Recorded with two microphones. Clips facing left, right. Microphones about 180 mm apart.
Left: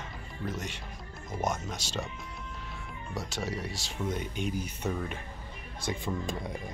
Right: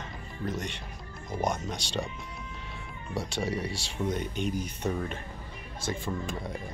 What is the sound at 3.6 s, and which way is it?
Speech, centre (ahead or behind).